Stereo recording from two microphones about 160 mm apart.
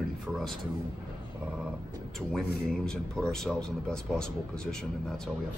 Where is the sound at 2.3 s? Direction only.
Centre (ahead or behind).